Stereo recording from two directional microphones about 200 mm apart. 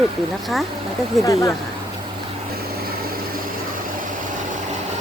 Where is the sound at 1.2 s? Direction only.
15° left (ahead or behind).